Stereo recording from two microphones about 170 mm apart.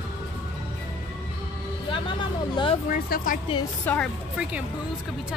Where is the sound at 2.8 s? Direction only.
55° left (ahead or behind).